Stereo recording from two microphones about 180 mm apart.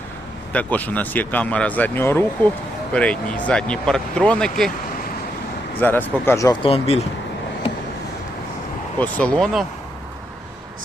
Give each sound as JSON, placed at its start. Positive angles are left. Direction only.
{"t": 0.5, "sound": "speech", "side_deg": 10}
{"t": 5.8, "sound": "speech", "side_deg": 10}
{"t": 6.6, "sound": "speech", "side_deg": 30}
{"t": 9.0, "sound": "speech", "side_deg": 5}